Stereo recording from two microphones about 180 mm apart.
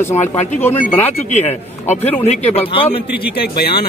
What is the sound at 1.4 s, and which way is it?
A man's voice, 35° left (ahead or behind).